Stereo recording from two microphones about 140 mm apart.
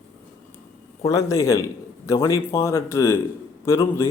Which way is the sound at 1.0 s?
20° left (ahead or behind).